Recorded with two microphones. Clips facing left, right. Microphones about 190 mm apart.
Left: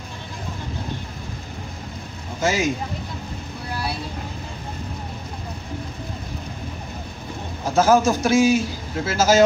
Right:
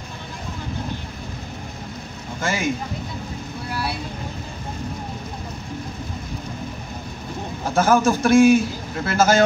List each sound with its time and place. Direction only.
2.4 s a man's voice: 55° right (ahead or behind)
7.7 s a man's voice: 55° right (ahead or behind)